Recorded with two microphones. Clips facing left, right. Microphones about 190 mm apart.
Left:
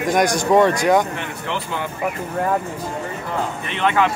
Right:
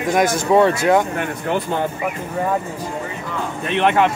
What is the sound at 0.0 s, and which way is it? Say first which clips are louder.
Speech: even; centre (ahead or behind).